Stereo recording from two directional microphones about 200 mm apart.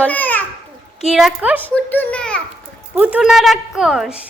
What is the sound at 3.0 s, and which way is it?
A woman's voice, 5° right (ahead or behind).